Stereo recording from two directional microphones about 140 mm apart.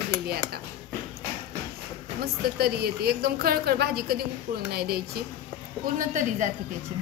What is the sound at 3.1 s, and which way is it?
A woman's voice, 90° right.